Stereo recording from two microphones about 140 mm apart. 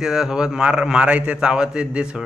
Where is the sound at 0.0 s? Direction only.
5° right (ahead or behind).